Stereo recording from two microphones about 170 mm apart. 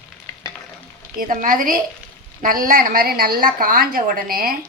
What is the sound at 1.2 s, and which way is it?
A woman's voice, 55° right (ahead or behind).